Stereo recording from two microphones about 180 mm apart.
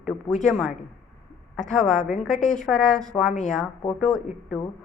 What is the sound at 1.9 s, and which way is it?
Speech, 45° left (ahead or behind).